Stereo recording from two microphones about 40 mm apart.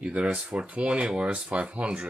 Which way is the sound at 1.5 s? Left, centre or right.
Right.